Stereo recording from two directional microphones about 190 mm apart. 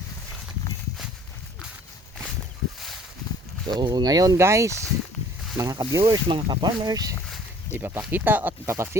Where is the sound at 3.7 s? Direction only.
25° right (ahead or behind).